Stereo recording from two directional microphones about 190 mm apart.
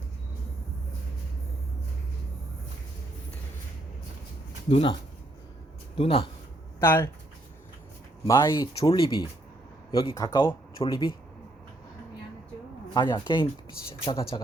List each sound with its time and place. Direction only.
4.7 s speech: 25° left (ahead or behind)
6.0 s speech: 30° left (ahead or behind)
6.7 s speech: 15° left (ahead or behind)
8.3 s speech: 25° left (ahead or behind)
12.9 s speech: 20° left (ahead or behind)